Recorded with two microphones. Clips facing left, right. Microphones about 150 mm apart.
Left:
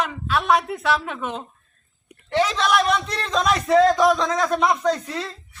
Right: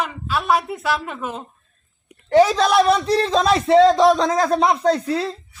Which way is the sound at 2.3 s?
40° right (ahead or behind).